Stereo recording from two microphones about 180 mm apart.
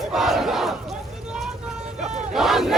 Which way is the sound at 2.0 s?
40° right (ahead or behind).